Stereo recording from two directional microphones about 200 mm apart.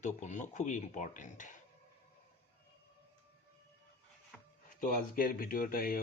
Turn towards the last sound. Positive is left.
turn(degrees=45)  # may be behind; listen again after turning